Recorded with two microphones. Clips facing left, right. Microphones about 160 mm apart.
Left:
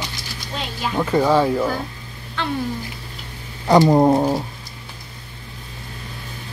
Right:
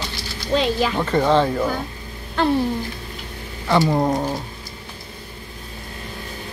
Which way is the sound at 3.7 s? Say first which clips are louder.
Left 5 dB; 35° left (ahead or behind).